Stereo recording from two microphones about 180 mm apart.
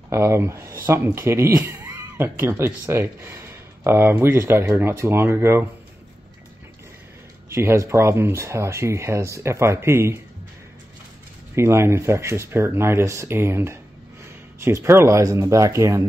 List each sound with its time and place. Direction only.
0.1 s speech: 15° right (ahead or behind)
7.5 s speech: 15° right (ahead or behind)
11.5 s speech: 15° right (ahead or behind)